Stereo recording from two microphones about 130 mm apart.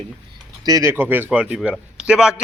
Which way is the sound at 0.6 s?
25° right (ahead or behind).